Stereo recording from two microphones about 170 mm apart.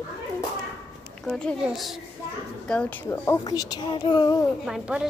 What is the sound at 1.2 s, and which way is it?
A child's voice, 5° left (ahead or behind).